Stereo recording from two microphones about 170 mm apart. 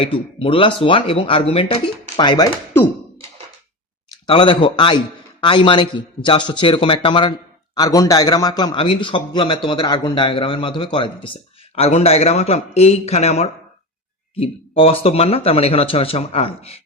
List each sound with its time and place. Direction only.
0.0 s speech: 30° left (ahead or behind)
4.3 s a man's voice: 30° left (ahead or behind)